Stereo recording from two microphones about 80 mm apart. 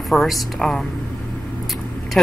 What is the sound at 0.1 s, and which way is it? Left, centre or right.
Speech, centre.